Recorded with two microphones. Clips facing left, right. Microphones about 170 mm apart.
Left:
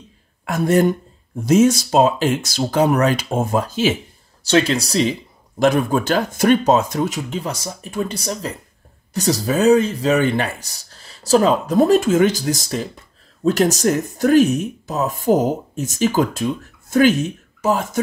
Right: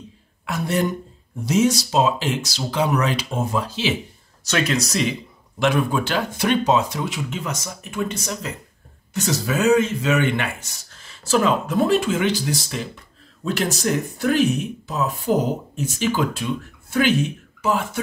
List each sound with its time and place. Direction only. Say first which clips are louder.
0.5 s speech: left 7 dB; 50° left (ahead or behind)
4.5 s speech: left 5 dB; 30° left (ahead or behind)
5.6 s speech: left 4 dB; 40° left (ahead or behind)